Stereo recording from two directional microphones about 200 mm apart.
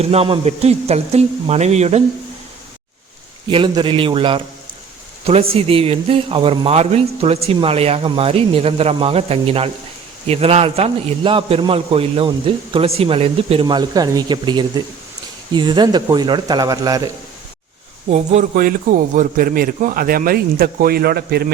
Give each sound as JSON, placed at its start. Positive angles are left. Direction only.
{"t": 0.0, "sound": "speech", "side_deg": -30}
{"t": 3.5, "sound": "a man's voice", "side_deg": -25}
{"t": 18.1, "sound": "a man's voice", "side_deg": -35}